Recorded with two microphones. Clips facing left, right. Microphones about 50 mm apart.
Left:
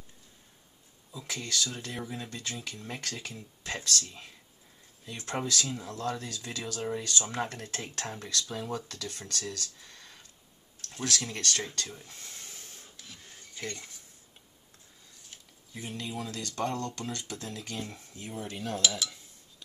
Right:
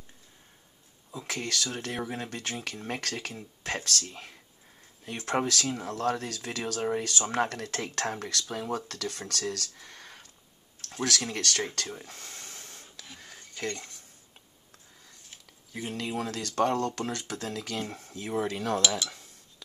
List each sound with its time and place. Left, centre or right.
1.1 s speech: right
3.3 s speech: right
4.0 s speech: right
7.4 s speech: right
8.5 s speech: right
8.8 s speech: right
13.0 s a sound: right
13.3 s cutlery: right
15.7 s speech: right
17.8 s rub: right
18.1 s speech: right